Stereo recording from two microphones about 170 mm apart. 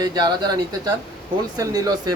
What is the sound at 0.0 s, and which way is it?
Speech, 25° right (ahead or behind).